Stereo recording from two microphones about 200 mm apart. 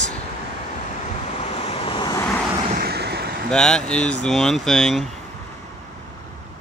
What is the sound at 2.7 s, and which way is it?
Vehicle, 50° right (ahead or behind).